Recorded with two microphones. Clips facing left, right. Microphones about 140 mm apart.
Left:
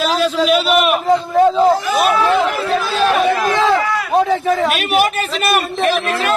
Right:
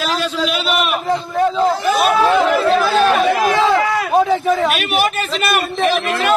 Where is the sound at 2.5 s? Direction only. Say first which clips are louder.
Right 4 dB; 50° right (ahead or behind).